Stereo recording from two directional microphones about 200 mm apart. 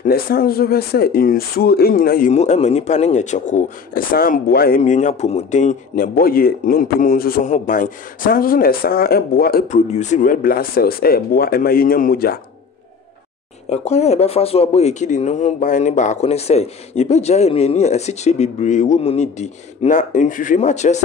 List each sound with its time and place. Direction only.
0.0 s speech: 45° left (ahead or behind)
2.3 s speech: 35° left (ahead or behind)
13.7 s speech: 35° left (ahead or behind)